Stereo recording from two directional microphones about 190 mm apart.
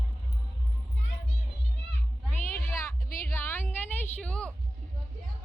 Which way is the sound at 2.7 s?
10° left (ahead or behind).